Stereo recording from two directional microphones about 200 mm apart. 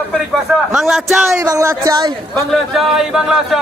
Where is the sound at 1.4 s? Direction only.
15° right (ahead or behind).